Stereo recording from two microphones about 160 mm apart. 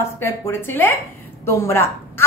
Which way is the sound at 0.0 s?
15° left (ahead or behind).